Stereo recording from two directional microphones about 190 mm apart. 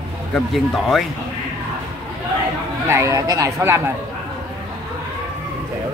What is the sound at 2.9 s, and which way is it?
Speech, 15° right (ahead or behind).